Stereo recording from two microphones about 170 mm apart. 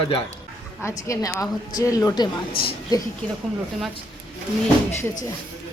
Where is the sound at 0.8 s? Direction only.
15° left (ahead or behind).